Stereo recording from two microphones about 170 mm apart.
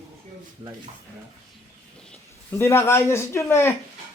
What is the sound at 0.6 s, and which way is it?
Speech, 30° right (ahead or behind).